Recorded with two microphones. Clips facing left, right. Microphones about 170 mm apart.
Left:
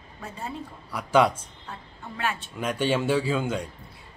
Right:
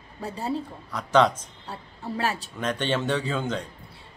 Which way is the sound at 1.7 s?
35° right (ahead or behind).